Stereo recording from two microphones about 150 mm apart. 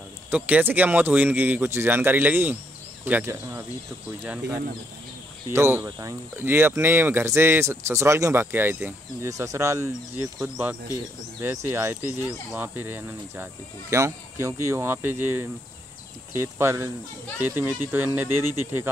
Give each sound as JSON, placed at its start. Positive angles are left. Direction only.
{"t": 0.3, "sound": "speech", "side_deg": -10}
{"t": 5.5, "sound": "speech", "side_deg": -15}
{"t": 10.4, "sound": "speech", "side_deg": -10}